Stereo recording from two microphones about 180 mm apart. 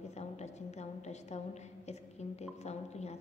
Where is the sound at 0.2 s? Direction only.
40° left (ahead or behind).